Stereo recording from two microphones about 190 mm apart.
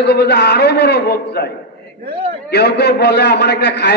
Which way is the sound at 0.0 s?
65° left (ahead or behind).